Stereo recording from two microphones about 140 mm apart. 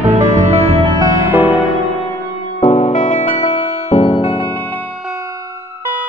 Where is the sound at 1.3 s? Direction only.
10° right (ahead or behind).